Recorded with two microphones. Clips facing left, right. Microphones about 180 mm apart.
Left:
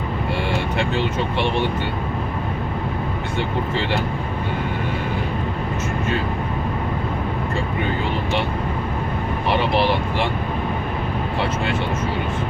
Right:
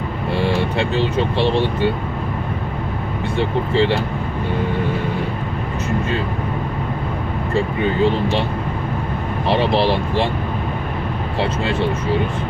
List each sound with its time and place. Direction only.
0.4 s speech: 30° right (ahead or behind)
3.3 s speech: 30° right (ahead or behind)
9.5 s speech: 30° right (ahead or behind)